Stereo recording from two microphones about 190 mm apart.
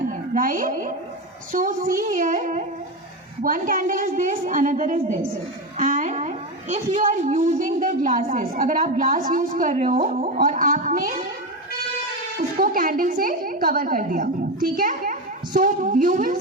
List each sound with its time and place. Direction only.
0.1 s a woman's voice: 45° right (ahead or behind)
12.4 s a woman's voice: 45° right (ahead or behind)